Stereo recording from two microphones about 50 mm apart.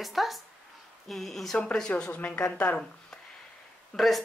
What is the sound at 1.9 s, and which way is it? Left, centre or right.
Speech, left.